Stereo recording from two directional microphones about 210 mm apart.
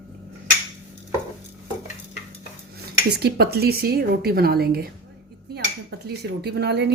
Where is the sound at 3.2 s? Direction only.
50° right (ahead or behind).